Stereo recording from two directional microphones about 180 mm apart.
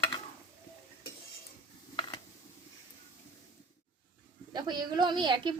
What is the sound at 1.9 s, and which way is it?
Mechanisms, 25° left (ahead or behind).